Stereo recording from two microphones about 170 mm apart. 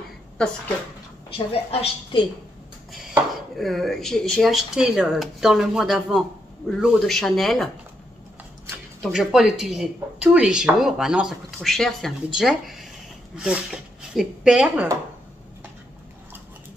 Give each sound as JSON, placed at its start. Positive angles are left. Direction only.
{"t": 1.3, "sound": "a woman's voice", "side_deg": 35}
{"t": 3.5, "sound": "a woman's voice", "side_deg": 0}
{"t": 9.0, "sound": "a woman's voice", "side_deg": -5}